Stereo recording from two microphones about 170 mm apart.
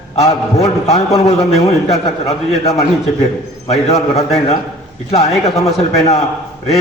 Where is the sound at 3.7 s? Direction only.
40° left (ahead or behind).